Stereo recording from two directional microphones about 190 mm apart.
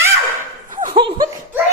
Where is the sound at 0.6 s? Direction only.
45° right (ahead or behind).